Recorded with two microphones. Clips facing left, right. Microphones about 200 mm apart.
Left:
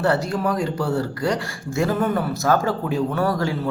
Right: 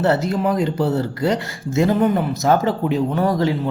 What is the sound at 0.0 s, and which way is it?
Speech, 20° right (ahead or behind).